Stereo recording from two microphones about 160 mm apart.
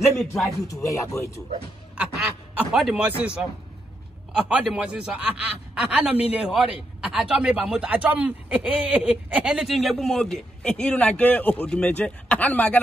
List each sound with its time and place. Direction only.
0.0 s speech: 15° left (ahead or behind)
2.0 s a sound: centre (ahead or behind)
4.3 s a man's voice: 5° right (ahead or behind)